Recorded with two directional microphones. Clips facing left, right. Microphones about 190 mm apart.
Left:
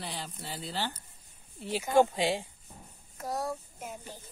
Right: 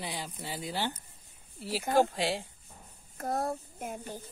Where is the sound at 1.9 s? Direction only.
Centre (ahead or behind).